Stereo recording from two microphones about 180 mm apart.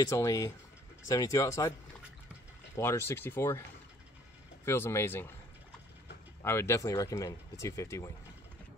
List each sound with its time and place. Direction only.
0.0 s speech: 15° left (ahead or behind)
2.7 s speech: 15° left (ahead or behind)
4.6 s speech: 15° left (ahead or behind)
6.4 s speech: 15° left (ahead or behind)